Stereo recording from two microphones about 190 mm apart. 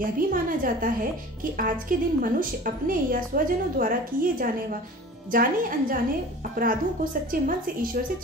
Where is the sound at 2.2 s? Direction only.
50° right (ahead or behind).